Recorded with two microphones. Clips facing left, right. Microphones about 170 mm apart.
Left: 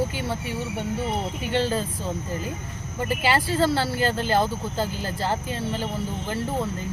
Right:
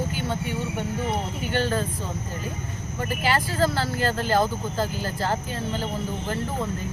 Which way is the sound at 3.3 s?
30° left (ahead or behind).